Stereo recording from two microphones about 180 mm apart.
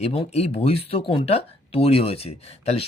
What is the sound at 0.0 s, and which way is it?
Speech, 35° left (ahead or behind).